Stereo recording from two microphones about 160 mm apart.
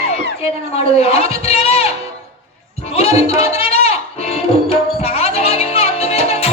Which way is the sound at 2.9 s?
40° left (ahead or behind).